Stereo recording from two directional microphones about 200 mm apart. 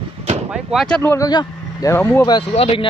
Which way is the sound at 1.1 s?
20° left (ahead or behind).